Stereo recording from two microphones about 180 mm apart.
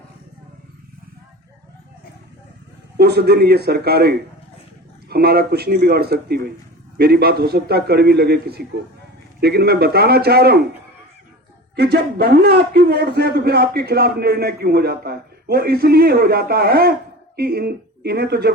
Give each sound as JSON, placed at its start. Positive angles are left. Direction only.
{"t": 3.0, "sound": "a man's voice", "side_deg": -60}
{"t": 11.8, "sound": "a man's voice", "side_deg": -60}